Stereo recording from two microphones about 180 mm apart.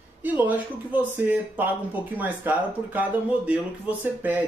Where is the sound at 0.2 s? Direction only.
10° right (ahead or behind).